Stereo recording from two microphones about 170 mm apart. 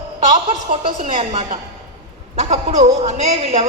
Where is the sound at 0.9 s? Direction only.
45° right (ahead or behind).